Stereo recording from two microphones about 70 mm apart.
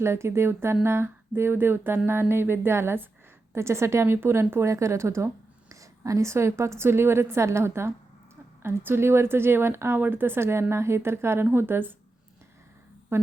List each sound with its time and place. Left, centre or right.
0.0 s a woman's voice: right